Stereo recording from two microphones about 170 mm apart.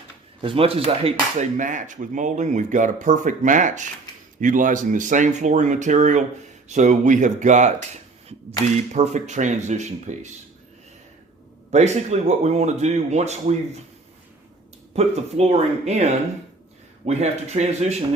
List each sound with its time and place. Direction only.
0.4 s speech: 35° right (ahead or behind)
1.0 s speech: 45° right (ahead or behind)
8.9 s speech: 45° right (ahead or behind)
11.7 s speech: 40° right (ahead or behind)
14.9 s speech: 40° right (ahead or behind)